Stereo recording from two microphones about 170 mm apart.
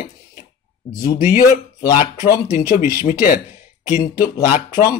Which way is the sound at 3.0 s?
55° left (ahead or behind).